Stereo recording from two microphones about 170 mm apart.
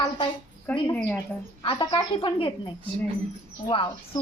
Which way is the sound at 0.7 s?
10° left (ahead or behind).